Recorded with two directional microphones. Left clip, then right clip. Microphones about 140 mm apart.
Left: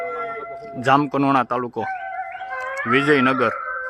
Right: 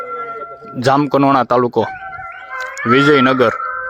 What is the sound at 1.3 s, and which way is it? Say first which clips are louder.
Speech: right 7 dB; 40° right (ahead or behind).